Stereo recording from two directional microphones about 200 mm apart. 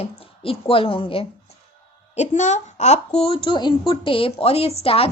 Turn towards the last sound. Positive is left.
turn(degrees=30)  # may be behind; listen again after turning